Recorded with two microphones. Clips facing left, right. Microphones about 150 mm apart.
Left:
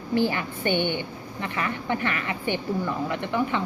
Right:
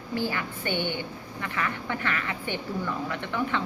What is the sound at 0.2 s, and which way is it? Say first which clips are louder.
A woman's voice: left 5 dB; 20° left (ahead or behind).